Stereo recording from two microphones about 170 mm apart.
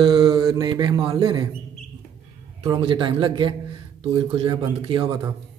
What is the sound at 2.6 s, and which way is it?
A man's voice, 25° right (ahead or behind).